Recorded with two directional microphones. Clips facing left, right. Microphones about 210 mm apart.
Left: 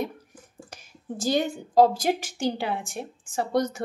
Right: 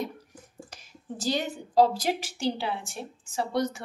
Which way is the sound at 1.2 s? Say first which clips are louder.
Left 4 dB; 50° left (ahead or behind).